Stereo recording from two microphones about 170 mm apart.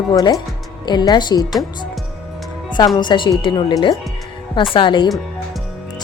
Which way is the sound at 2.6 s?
25° left (ahead or behind).